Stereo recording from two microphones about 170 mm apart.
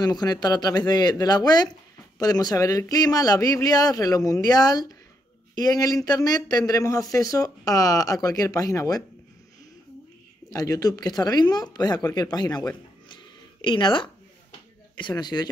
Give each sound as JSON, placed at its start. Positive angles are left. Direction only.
{"t": 0.0, "sound": "speech", "side_deg": 25}
{"t": 10.5, "sound": "speech", "side_deg": 20}